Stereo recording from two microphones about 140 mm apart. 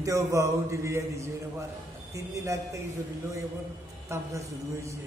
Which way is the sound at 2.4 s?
20° right (ahead or behind).